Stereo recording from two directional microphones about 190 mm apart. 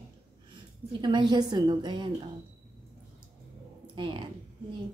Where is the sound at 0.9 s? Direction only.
25° right (ahead or behind).